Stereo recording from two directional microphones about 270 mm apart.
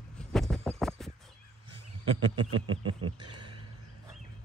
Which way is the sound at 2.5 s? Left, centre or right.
Right.